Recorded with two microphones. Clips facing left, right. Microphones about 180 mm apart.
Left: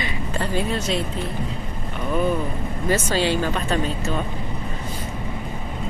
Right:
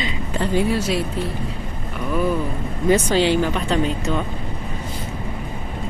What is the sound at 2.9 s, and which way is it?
Speech, 15° right (ahead or behind).